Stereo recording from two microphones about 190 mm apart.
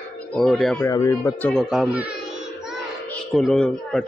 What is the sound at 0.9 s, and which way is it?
Speech, 15° left (ahead or behind).